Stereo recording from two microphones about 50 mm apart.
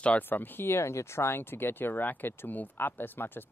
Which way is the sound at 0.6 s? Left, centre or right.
Left.